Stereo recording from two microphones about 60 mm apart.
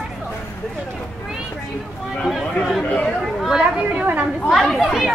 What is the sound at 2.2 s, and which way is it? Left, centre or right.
Speech, centre.